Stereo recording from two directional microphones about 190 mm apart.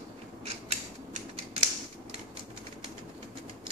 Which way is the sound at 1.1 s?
40° right (ahead or behind).